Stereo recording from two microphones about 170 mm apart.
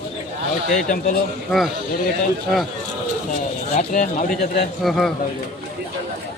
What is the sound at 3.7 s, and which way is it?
Speech, 50° left (ahead or behind).